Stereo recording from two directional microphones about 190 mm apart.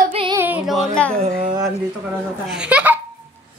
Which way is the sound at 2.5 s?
5° right (ahead or behind).